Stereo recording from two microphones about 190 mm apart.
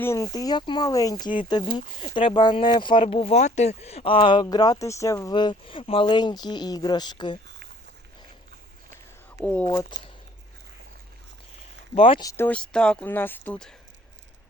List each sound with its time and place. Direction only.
0.0 s speech: 15° left (ahead or behind)
9.4 s speech: 10° left (ahead or behind)
9.9 s speech: 25° left (ahead or behind)
11.9 s speech: 30° left (ahead or behind)
12.3 s speech: 10° left (ahead or behind)